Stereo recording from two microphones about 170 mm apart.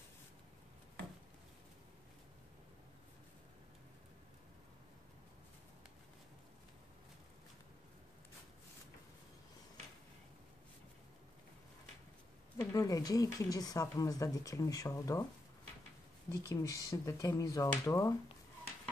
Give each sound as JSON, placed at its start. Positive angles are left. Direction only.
{"t": 12.5, "sound": "speech", "side_deg": 20}
{"t": 16.3, "sound": "speech", "side_deg": 20}